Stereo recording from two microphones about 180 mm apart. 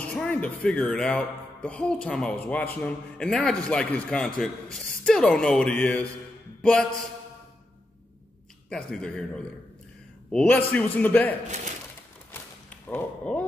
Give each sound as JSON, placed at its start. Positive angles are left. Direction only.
{"t": 0.0, "sound": "speech", "side_deg": 5}
{"t": 8.6, "sound": "speech", "side_deg": 5}
{"t": 10.3, "sound": "speech", "side_deg": 5}
{"t": 11.4, "sound": "speech", "side_deg": -40}
{"t": 12.3, "sound": "whip", "side_deg": 10}